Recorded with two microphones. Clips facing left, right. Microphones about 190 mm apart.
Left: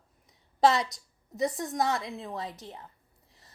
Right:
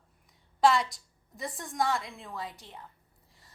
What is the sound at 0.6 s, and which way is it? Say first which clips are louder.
Speech: left 1 dB; 20° left (ahead or behind).